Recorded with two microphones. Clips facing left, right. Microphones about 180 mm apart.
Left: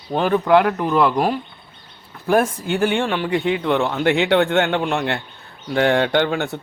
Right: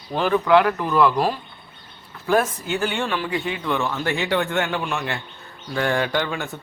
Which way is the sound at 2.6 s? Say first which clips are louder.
Left 5 dB; 55° left (ahead or behind).